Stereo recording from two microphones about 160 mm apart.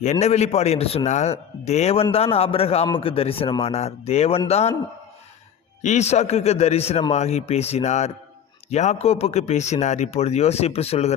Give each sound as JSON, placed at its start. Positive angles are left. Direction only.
{"t": 0.0, "sound": "a man's voice", "side_deg": 45}
{"t": 5.8, "sound": "a man's voice", "side_deg": 45}